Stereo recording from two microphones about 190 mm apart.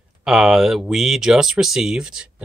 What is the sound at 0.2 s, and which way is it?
Speech, centre (ahead or behind).